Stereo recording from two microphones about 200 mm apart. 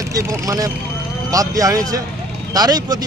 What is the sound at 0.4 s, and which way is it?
A man's voice, 15° right (ahead or behind).